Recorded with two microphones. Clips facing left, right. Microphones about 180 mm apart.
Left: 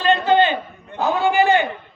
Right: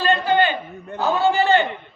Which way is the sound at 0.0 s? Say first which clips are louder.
Left 2 dB; 20° left (ahead or behind).